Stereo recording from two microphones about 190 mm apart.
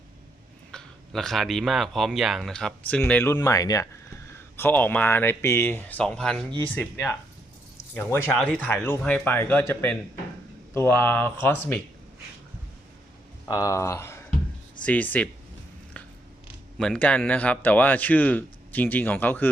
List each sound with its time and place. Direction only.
0.7 s speech: 5° left (ahead or behind)
13.4 s speech: 20° left (ahead or behind)
16.7 s speech: 5° left (ahead or behind)